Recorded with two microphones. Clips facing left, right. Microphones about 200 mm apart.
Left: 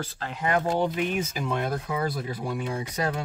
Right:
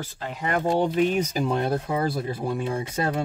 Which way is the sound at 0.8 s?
35° right (ahead or behind).